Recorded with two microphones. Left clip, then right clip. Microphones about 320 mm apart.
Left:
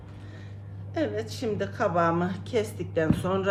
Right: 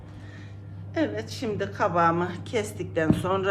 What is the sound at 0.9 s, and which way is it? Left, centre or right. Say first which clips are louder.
A woman's voice: right 1 dB; centre.